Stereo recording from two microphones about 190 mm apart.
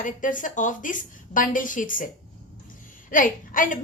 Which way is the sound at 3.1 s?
45° left (ahead or behind).